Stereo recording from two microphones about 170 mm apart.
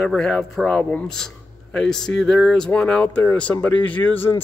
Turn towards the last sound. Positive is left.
turn(degrees=10)  # may be behind; listen again after turning